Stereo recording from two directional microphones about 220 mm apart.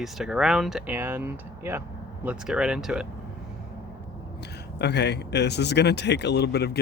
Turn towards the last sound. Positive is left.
turn(degrees=50)  # may be behind; listen again after turning